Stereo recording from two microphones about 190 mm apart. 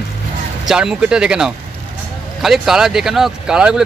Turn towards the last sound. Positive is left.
turn(degrees=-5)  # may be behind; listen again after turning